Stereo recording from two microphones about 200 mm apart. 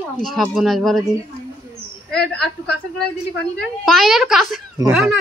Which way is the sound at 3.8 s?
Centre (ahead or behind).